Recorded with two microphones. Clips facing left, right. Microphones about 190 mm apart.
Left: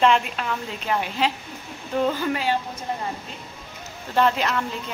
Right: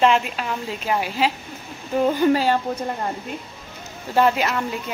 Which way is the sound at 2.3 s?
35° right (ahead or behind).